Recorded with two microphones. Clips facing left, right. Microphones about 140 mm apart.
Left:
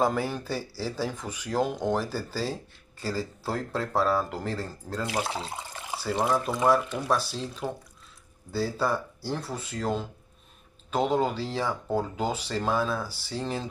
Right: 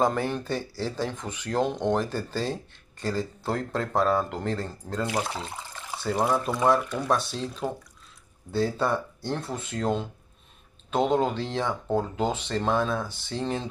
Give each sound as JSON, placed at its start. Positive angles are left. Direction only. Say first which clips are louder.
{"t": 0.0, "sound": "speech", "louder": "right 1 dB", "side_deg": 5}
{"t": 5.3, "sound": "water", "louder": "left 1 dB", "side_deg": 15}
{"t": 6.5, "sound": "speech", "louder": "right 1 dB", "side_deg": 0}
{"t": 8.5, "sound": "speech", "louder": "right 2 dB", "side_deg": 5}